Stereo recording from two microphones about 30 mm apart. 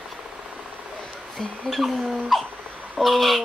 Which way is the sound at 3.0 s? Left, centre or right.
Centre.